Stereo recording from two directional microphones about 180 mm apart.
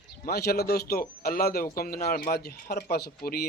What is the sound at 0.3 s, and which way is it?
Speech, 60° left (ahead or behind).